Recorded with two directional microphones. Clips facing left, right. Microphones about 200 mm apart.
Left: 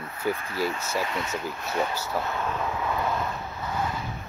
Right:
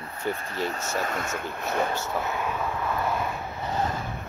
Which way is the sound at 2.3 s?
10° right (ahead or behind).